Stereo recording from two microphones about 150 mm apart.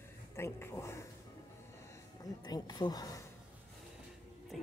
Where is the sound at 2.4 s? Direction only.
25° left (ahead or behind).